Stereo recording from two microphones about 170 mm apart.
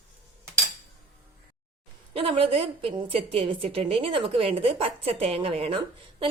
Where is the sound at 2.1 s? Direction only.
30° right (ahead or behind).